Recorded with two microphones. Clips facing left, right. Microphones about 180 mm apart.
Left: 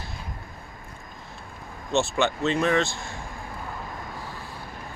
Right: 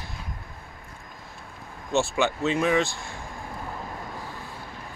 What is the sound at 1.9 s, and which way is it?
Speech, 10° right (ahead or behind).